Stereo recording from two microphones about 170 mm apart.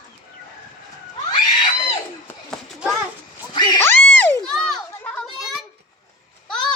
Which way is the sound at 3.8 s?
10° left (ahead or behind).